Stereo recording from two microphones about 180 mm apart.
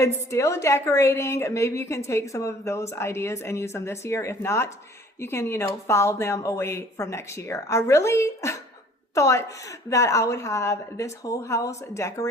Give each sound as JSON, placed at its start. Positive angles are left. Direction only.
{"t": 0.0, "sound": "a woman's voice", "side_deg": 15}